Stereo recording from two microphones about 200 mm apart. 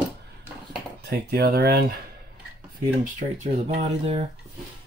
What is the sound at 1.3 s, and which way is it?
Speech, 50° right (ahead or behind).